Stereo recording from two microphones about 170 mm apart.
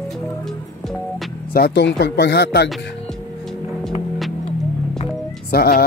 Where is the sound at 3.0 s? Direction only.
Centre (ahead or behind).